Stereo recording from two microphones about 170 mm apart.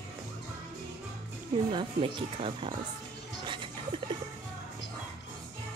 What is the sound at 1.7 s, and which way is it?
Speech, 30° right (ahead or behind).